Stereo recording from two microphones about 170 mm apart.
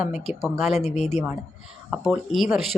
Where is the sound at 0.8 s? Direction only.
40° left (ahead or behind).